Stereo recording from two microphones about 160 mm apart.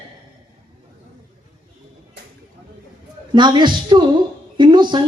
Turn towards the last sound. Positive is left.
turn(degrees=-30)  # may be behind; listen again after turning